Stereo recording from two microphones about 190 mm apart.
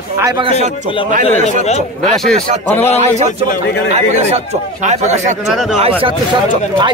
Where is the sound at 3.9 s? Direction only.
35° right (ahead or behind).